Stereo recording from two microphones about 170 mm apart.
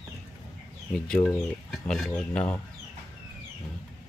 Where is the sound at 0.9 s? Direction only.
5° left (ahead or behind).